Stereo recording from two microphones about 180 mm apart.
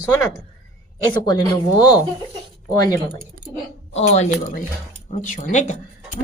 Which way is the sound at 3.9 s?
40° left (ahead or behind).